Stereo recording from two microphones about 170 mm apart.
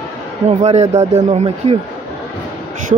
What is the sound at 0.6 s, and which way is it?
Speech, 40° right (ahead or behind).